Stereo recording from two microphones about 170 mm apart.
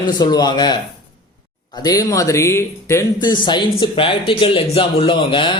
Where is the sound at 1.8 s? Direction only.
20° left (ahead or behind).